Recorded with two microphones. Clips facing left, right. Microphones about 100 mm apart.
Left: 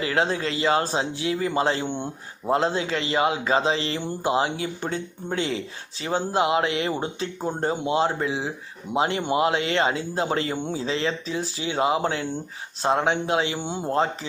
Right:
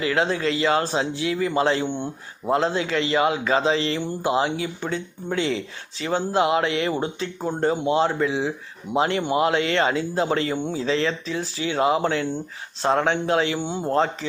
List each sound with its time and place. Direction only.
0.0 s speech: 30° left (ahead or behind)
4.4 s speech: 35° left (ahead or behind); by 14.0 s 20° left (ahead or behind)